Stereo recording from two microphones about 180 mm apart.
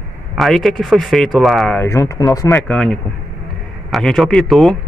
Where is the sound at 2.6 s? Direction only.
5° left (ahead or behind).